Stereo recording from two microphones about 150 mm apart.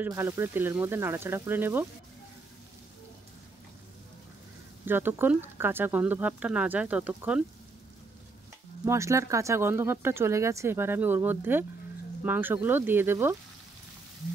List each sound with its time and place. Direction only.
0.0 s speech: 15° right (ahead or behind)
4.8 s speech: 15° right (ahead or behind)
8.8 s speech: 20° right (ahead or behind)